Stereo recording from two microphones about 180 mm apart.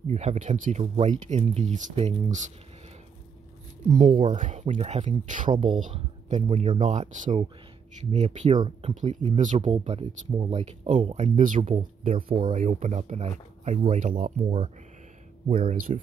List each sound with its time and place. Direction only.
0.1 s speech: 40° right (ahead or behind)
3.9 s speech: 45° right (ahead or behind)
8.5 s speech: 30° right (ahead or behind)
8.9 s speech: 40° right (ahead or behind)
15.4 s speech: 50° right (ahead or behind)